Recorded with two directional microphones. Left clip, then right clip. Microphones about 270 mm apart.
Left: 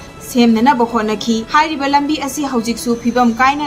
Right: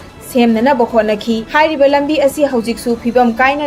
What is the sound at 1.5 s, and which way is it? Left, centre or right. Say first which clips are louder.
Speech: right 3 dB; left.